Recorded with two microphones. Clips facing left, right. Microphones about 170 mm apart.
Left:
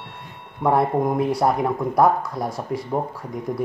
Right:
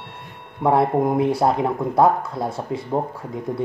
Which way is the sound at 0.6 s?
25° right (ahead or behind).